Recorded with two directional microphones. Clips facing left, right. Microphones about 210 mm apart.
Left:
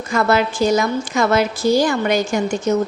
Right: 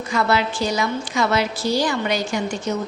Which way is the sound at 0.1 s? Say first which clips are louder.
Left 4 dB; 45° left (ahead or behind).